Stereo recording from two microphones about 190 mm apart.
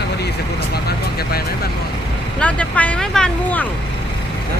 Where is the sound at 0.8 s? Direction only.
55° left (ahead or behind).